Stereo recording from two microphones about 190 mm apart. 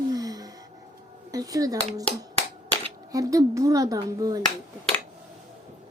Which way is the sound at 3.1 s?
15° right (ahead or behind).